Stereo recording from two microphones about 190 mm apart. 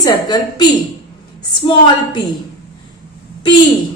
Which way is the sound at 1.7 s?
25° left (ahead or behind).